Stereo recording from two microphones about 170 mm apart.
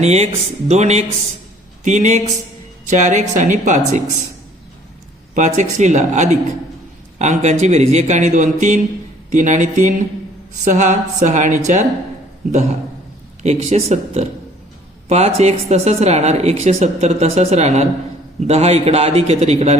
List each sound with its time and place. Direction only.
0.0 s a woman's voice: 40° right (ahead or behind)
5.3 s a woman's voice: 45° right (ahead or behind)